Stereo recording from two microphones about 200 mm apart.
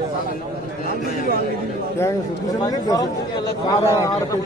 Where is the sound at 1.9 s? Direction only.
15° left (ahead or behind).